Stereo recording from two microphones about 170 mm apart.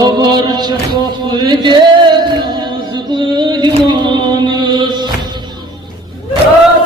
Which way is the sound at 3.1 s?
25° right (ahead or behind).